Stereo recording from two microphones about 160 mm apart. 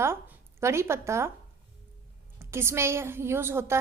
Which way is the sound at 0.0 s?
15° right (ahead or behind).